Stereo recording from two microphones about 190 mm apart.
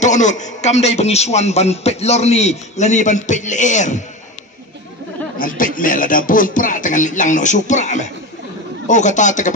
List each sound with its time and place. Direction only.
0.0 s a man's voice: 40° left (ahead or behind)
5.4 s a man's voice: 45° left (ahead or behind)